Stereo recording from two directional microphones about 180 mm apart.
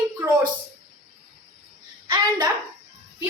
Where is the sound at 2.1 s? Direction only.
25° right (ahead or behind).